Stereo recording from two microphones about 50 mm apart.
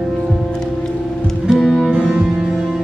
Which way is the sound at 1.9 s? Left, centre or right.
Centre.